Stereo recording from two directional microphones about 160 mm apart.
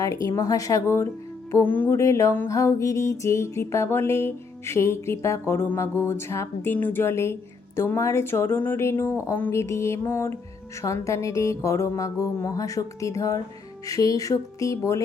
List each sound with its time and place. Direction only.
0.3 s speech: 20° left (ahead or behind)
10.8 s music: 20° left (ahead or behind)